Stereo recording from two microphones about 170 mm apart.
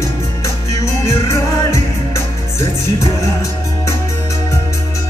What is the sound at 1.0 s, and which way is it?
Music, 15° left (ahead or behind).